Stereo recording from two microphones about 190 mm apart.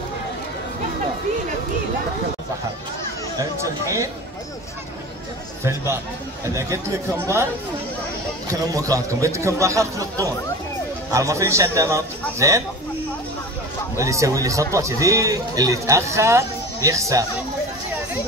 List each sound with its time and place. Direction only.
5.6 s a man's voice: 15° right (ahead or behind)
8.5 s a man's voice: 20° right (ahead or behind)
13.9 s a man's voice: 15° right (ahead or behind)